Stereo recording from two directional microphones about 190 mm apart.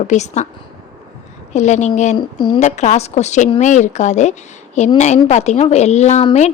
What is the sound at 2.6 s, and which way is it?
A woman's voice, 40° left (ahead or behind).